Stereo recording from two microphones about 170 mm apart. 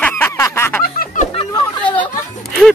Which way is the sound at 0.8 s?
55° left (ahead or behind).